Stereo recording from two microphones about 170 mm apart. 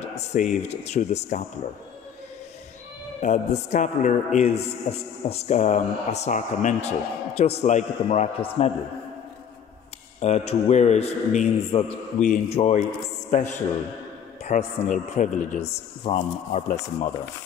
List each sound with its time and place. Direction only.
0.3 s a man's voice: 45° left (ahead or behind)
3.2 s a man's voice: 45° left (ahead or behind)
10.2 s a man's voice: 40° left (ahead or behind)